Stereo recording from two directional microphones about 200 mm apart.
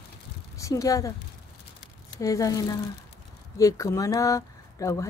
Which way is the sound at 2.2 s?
15° left (ahead or behind).